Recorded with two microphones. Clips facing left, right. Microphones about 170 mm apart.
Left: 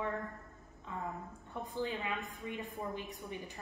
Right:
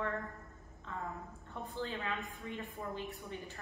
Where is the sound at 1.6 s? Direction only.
15° left (ahead or behind).